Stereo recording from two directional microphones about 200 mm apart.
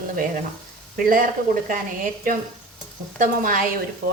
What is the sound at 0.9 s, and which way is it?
Speech, 45° right (ahead or behind).